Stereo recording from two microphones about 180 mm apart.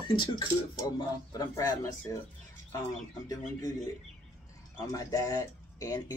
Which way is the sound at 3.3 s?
20° left (ahead or behind).